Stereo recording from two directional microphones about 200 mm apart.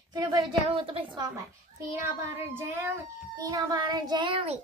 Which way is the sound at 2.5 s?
10° right (ahead or behind).